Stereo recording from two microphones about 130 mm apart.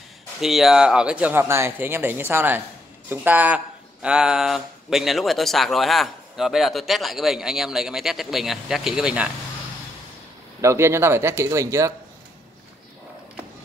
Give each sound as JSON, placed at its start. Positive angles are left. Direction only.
{"t": 0.4, "sound": "speech", "side_deg": 0}
{"t": 10.6, "sound": "speech", "side_deg": -20}